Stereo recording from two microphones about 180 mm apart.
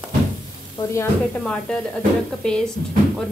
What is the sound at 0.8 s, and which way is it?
Speech, 15° left (ahead or behind).